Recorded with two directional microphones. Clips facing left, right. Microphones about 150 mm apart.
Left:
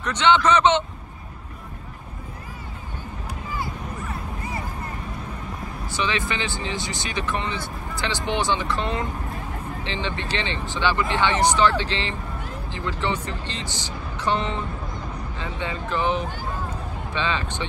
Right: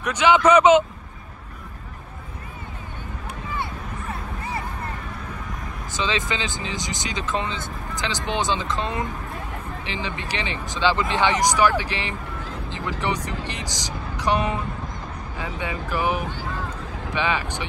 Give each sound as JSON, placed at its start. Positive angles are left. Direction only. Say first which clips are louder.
{"t": 0.0, "sound": "speech", "louder": "right 2 dB", "side_deg": -10}
{"t": 5.9, "sound": "speech", "louder": "even", "side_deg": -20}